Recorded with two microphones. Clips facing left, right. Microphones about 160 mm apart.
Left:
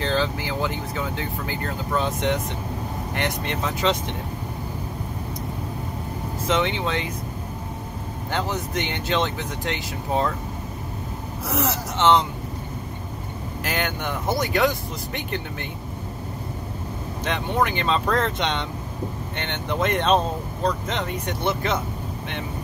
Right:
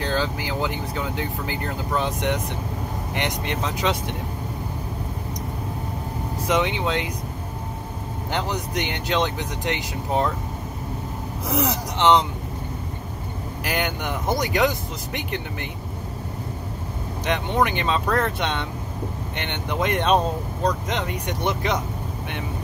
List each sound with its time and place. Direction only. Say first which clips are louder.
0.0 s speech: left 1 dB; 10° right (ahead or behind)
6.4 s speech: right 1 dB; 15° right (ahead or behind)
8.3 s speech: even; 15° right (ahead or behind)
11.4 s speech: right 1 dB; 15° right (ahead or behind)
13.7 s speech: right 1 dB; 15° right (ahead or behind)
17.2 s speech: right 1 dB; 15° right (ahead or behind)